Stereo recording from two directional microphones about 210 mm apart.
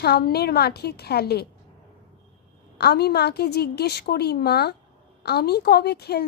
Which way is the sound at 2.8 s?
50° left (ahead or behind).